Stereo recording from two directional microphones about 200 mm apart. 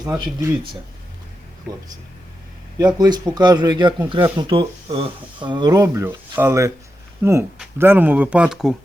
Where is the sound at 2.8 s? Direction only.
20° right (ahead or behind).